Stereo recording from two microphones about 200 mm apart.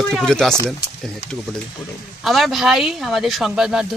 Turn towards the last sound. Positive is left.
turn(degrees=0)  # may be behind; listen again after turning